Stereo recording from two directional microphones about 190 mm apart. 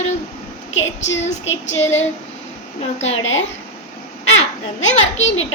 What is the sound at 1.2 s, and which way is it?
Speech, 35° left (ahead or behind).